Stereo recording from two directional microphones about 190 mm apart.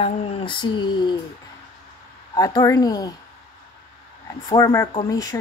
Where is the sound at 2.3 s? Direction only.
20° left (ahead or behind).